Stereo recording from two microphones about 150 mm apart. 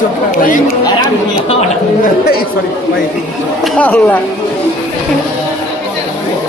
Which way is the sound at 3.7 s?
10° left (ahead or behind).